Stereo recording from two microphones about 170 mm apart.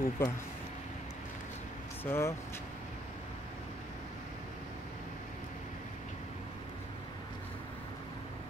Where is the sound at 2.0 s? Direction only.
15° left (ahead or behind).